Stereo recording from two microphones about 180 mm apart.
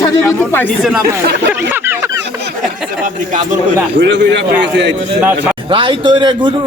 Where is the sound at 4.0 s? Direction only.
75° right (ahead or behind).